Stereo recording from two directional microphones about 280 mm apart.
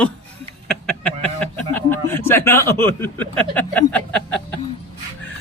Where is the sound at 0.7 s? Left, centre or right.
Centre.